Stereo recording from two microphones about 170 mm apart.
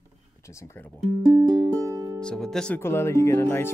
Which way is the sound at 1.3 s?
20° right (ahead or behind).